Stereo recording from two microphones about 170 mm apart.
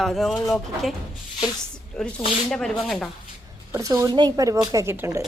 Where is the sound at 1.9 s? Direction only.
5° left (ahead or behind).